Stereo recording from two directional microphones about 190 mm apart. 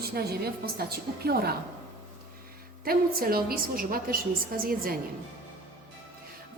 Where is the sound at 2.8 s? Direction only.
50° right (ahead or behind).